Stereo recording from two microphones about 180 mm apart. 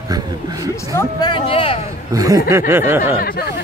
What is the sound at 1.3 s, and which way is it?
Speech, 30° left (ahead or behind).